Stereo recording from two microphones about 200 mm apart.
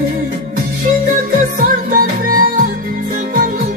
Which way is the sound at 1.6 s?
45° right (ahead or behind).